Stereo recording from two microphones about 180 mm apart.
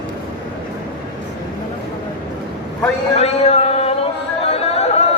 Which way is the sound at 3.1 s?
35° left (ahead or behind).